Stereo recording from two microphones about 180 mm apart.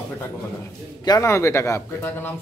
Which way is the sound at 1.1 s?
15° left (ahead or behind).